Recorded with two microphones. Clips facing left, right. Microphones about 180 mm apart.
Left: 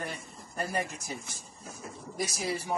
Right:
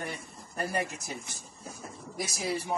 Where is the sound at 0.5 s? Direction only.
Centre (ahead or behind).